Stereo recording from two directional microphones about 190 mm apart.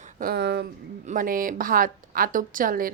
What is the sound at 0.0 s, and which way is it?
Speech, 50° right (ahead or behind).